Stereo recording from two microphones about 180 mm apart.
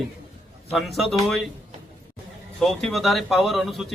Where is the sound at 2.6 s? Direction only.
Centre (ahead or behind).